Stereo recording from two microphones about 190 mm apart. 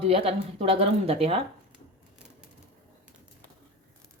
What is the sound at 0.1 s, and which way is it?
A woman's voice, 30° right (ahead or behind).